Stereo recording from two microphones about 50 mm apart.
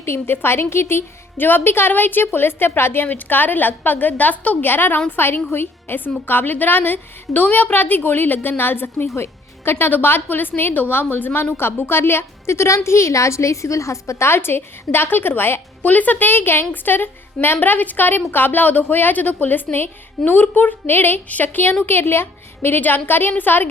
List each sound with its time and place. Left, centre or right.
0.0 s a woman's voice: left
4.7 s a woman's voice: left
9.1 s a woman's voice: left
14.3 s a woman's voice: left
15.8 s a woman's voice: left